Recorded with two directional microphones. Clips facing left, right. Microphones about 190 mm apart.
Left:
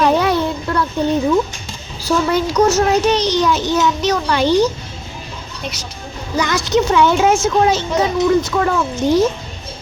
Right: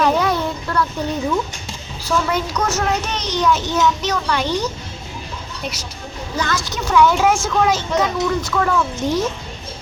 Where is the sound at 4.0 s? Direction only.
35° left (ahead or behind).